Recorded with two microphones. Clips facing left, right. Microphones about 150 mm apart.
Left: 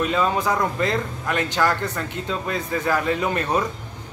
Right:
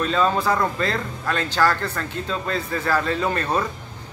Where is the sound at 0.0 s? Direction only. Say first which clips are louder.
Right 1 dB; 15° left (ahead or behind).